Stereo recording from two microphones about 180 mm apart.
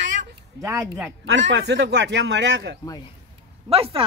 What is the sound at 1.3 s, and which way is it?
A man's voice, 90° right.